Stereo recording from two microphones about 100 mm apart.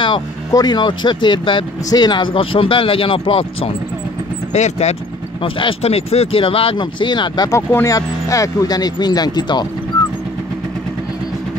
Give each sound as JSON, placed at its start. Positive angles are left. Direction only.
{"t": 0.5, "sound": "speech", "side_deg": 40}
{"t": 4.5, "sound": "speech", "side_deg": 90}
{"t": 5.4, "sound": "speech", "side_deg": 60}
{"t": 7.5, "sound": "speech", "side_deg": 30}